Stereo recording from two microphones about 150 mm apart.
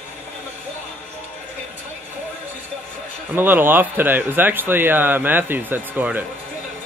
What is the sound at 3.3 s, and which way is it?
Speech, 15° right (ahead or behind).